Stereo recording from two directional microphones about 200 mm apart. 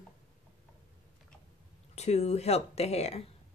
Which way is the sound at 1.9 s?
35° left (ahead or behind).